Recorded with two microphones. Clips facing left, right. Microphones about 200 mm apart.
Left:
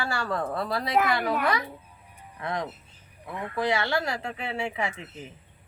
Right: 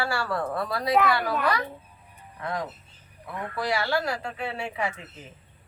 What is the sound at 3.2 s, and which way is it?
A woman's voice, 20° left (ahead or behind).